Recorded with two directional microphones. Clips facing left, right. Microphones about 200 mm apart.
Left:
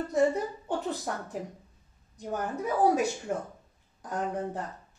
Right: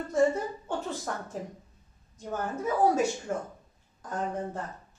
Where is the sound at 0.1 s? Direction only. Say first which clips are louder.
Right 1 dB; 15° left (ahead or behind).